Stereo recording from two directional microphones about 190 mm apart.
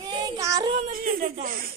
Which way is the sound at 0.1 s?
20° right (ahead or behind).